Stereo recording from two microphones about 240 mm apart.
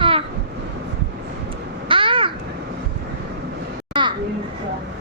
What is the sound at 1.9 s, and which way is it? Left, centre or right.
Babbling, right.